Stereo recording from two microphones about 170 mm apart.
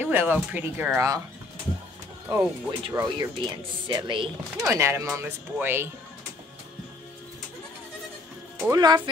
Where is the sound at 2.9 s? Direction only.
15° right (ahead or behind).